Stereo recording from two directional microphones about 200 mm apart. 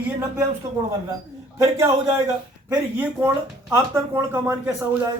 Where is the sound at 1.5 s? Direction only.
15° right (ahead or behind).